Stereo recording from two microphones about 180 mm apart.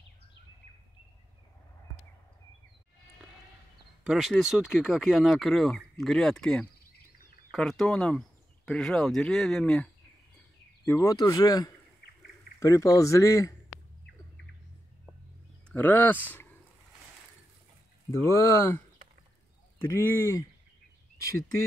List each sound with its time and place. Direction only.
4.0 s speech: centre (ahead or behind)
10.9 s speech: 15° left (ahead or behind)
15.7 s speech: 10° left (ahead or behind)
18.1 s speech: 15° left (ahead or behind)
19.8 s speech: 15° left (ahead or behind)